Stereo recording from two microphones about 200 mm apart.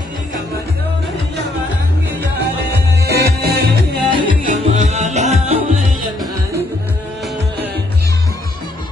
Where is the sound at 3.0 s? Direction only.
55° right (ahead or behind).